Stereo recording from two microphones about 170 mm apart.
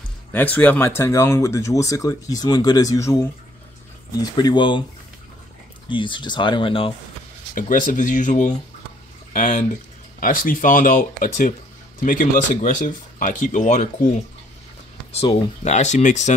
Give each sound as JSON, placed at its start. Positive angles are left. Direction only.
{"t": 0.3, "sound": "speech", "side_deg": 10}
{"t": 4.2, "sound": "speech", "side_deg": 25}
{"t": 5.9, "sound": "speech", "side_deg": 30}
{"t": 7.5, "sound": "speech", "side_deg": 50}
{"t": 15.1, "sound": "speech", "side_deg": 40}